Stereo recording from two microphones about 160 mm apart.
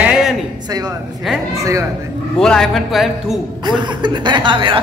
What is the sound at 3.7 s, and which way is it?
Speech, 30° right (ahead or behind).